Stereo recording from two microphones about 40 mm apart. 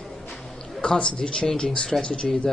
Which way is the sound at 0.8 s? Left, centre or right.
Left.